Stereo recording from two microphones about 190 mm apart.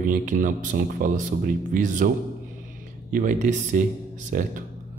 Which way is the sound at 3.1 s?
40° right (ahead or behind).